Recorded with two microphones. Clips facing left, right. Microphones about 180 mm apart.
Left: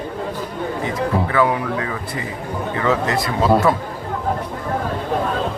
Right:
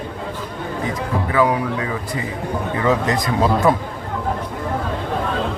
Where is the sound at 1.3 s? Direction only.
15° right (ahead or behind).